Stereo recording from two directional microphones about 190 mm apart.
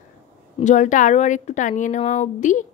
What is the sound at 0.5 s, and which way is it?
Speech, 40° left (ahead or behind).